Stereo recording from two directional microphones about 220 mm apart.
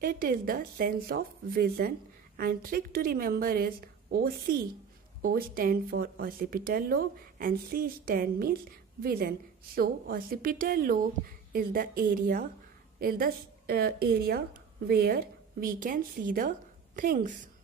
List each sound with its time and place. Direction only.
0.0 s a woman's voice: 40° right (ahead or behind)